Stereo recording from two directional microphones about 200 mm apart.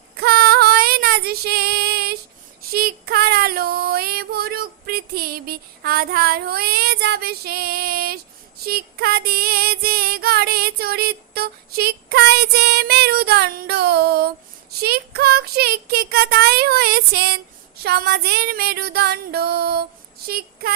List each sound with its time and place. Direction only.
0.2 s female singing: 50° right (ahead or behind)
2.6 s child singing: 50° right (ahead or behind)
8.6 s female singing: 50° right (ahead or behind)
14.8 s music: 50° right (ahead or behind)